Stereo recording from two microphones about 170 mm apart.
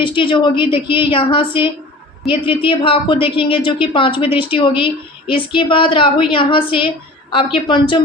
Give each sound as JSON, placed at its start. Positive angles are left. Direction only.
{"t": 0.0, "sound": "a woman's voice", "side_deg": 30}